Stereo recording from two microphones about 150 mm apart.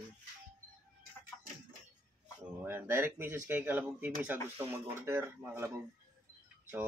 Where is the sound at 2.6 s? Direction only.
15° right (ahead or behind).